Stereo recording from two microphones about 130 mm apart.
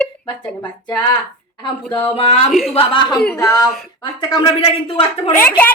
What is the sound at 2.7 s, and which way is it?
Speech, 40° left (ahead or behind).